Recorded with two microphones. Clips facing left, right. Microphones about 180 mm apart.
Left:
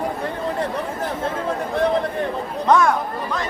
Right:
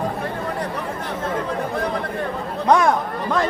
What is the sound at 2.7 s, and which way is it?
Speech, 15° right (ahead or behind).